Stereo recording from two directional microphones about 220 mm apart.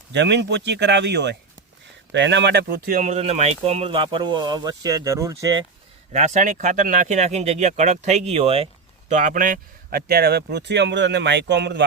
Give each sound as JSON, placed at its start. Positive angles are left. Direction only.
{"t": 0.1, "sound": "speech", "side_deg": -50}
{"t": 6.1, "sound": "speech", "side_deg": -35}